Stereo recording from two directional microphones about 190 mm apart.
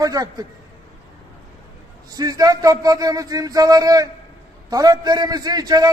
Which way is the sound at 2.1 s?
20° right (ahead or behind).